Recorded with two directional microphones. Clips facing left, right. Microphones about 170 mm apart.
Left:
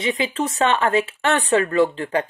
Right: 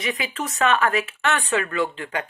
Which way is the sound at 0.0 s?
25° left (ahead or behind).